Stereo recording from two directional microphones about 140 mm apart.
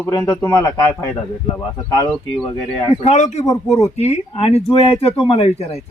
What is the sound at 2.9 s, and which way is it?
Speech, 50° left (ahead or behind).